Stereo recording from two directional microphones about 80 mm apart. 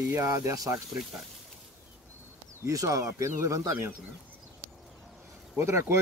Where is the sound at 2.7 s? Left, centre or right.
Right.